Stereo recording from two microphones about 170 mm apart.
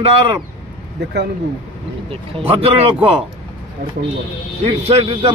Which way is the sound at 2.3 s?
35° right (ahead or behind).